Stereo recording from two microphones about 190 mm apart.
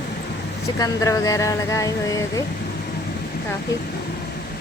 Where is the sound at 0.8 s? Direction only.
20° left (ahead or behind).